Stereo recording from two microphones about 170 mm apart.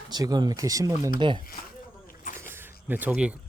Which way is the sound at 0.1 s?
25° right (ahead or behind).